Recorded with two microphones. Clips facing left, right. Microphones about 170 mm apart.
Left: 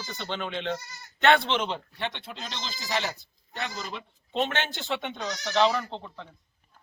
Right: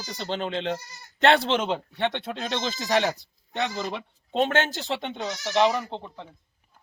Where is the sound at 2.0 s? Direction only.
70° right (ahead or behind).